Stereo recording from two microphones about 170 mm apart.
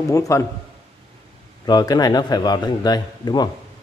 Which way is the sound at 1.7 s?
25° left (ahead or behind).